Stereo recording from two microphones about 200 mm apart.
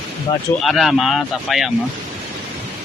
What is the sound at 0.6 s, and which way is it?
Speech, centre (ahead or behind).